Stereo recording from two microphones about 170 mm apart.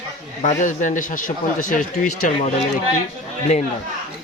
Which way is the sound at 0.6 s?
50° left (ahead or behind).